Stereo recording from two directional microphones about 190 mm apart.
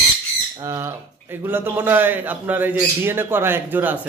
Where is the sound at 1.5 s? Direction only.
10° right (ahead or behind).